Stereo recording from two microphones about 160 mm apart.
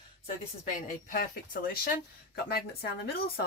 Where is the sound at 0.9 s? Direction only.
65° left (ahead or behind).